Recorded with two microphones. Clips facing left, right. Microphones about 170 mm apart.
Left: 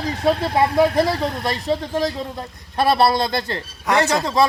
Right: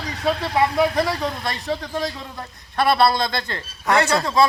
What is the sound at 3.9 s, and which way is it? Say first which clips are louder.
Speech: even; 20° left (ahead or behind).